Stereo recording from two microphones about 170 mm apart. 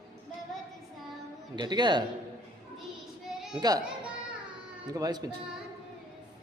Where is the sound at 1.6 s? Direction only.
25° right (ahead or behind).